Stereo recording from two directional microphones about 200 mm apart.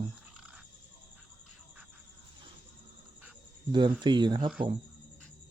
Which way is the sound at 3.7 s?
20° right (ahead or behind).